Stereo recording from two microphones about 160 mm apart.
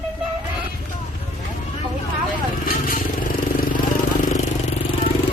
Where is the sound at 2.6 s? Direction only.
60° left (ahead or behind).